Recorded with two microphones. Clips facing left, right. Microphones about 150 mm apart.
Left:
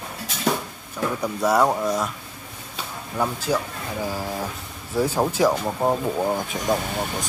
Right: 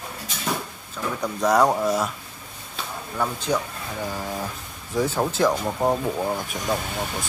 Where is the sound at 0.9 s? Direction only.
5° left (ahead or behind).